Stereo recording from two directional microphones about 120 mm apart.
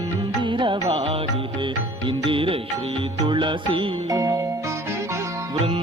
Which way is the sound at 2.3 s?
50° right (ahead or behind).